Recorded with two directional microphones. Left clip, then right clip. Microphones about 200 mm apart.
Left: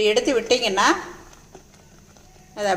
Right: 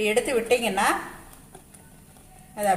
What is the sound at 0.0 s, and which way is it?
Speech, 30° left (ahead or behind).